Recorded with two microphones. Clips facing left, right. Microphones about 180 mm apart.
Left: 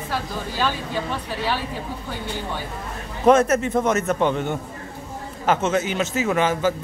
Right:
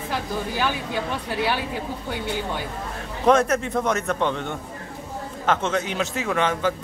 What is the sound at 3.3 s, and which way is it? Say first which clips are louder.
A man's voice: left 3 dB; 5° left (ahead or behind).